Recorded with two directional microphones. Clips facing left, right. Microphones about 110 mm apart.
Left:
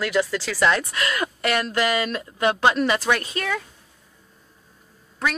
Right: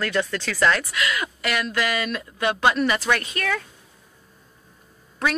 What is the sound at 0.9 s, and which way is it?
Speech, 40° left (ahead or behind).